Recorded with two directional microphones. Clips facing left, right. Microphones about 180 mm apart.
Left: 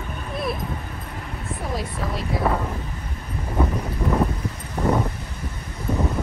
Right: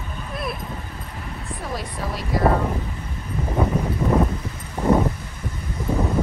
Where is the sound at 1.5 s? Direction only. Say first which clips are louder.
Left 2 dB; centre (ahead or behind).